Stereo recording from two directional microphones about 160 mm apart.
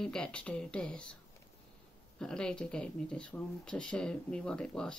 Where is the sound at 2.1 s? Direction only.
5° left (ahead or behind).